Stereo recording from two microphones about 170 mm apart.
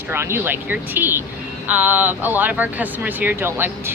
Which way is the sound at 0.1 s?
15° right (ahead or behind).